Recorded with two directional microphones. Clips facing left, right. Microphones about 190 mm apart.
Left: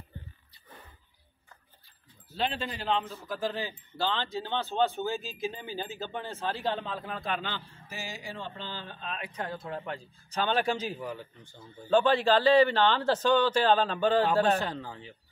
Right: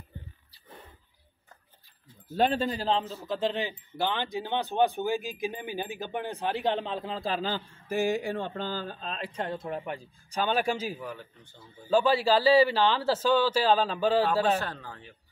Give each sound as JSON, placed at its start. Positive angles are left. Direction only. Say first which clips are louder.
{"t": 2.2, "sound": "speech", "louder": "right 7 dB", "side_deg": -45}
{"t": 3.3, "sound": "speech", "louder": "right 4 dB", "side_deg": -20}
{"t": 7.9, "sound": "speech", "louder": "right 13 dB", "side_deg": -55}
{"t": 11.0, "sound": "speech", "louder": "left 2 dB", "side_deg": 10}
{"t": 11.9, "sound": "speech", "louder": "even", "side_deg": -5}
{"t": 14.6, "sound": "speech", "louder": "left 2 dB", "side_deg": 15}